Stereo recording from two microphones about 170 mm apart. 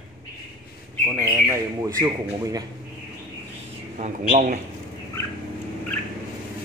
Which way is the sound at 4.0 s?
40° right (ahead or behind).